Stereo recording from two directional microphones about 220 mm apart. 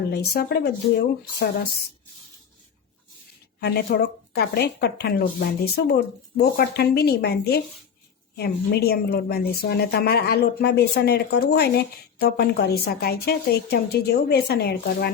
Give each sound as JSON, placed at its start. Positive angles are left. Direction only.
{"t": 0.1, "sound": "speech", "side_deg": 50}
{"t": 3.6, "sound": "speech", "side_deg": 50}